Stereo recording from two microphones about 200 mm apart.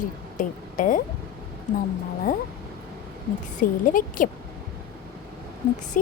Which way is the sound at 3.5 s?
40° left (ahead or behind).